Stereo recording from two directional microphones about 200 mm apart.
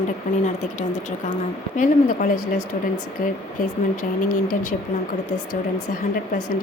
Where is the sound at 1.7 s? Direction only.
40° left (ahead or behind).